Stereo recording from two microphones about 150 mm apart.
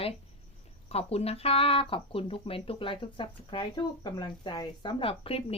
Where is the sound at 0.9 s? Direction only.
40° left (ahead or behind).